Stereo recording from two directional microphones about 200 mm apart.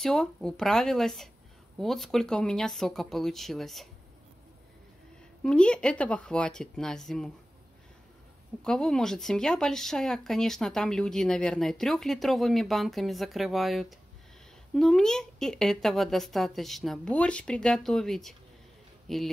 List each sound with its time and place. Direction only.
0.0 s speech: centre (ahead or behind)
5.4 s speech: 5° left (ahead or behind)
8.6 s speech: 5° left (ahead or behind)